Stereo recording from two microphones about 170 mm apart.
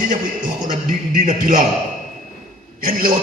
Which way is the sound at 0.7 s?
50° right (ahead or behind).